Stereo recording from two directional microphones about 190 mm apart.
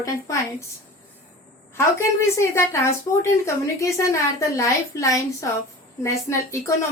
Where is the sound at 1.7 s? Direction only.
15° left (ahead or behind).